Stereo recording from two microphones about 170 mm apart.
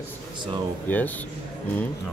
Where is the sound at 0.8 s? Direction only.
10° left (ahead or behind).